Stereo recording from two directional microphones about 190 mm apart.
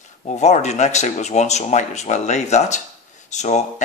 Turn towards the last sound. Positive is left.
turn(degrees=35)  # may be behind; listen again after turning